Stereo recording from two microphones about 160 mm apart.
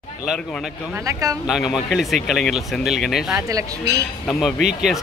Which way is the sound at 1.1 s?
20° right (ahead or behind).